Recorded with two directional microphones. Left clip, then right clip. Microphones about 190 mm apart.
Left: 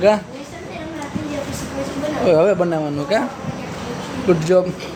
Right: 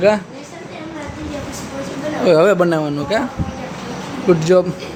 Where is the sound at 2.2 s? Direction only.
20° right (ahead or behind).